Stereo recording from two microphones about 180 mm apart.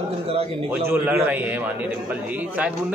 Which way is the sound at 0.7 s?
10° right (ahead or behind).